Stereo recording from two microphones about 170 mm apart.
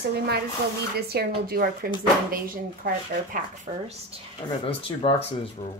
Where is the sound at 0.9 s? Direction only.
65° right (ahead or behind).